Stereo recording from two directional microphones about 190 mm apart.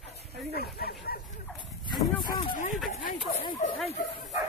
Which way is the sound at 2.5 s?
45° left (ahead or behind).